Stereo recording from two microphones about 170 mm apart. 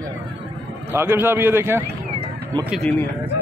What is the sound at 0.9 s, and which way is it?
Speech, 10° right (ahead or behind).